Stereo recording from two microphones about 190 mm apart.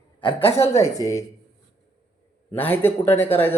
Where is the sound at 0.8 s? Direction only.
15° left (ahead or behind).